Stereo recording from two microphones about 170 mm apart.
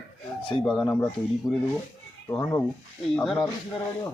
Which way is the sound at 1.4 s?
20° left (ahead or behind).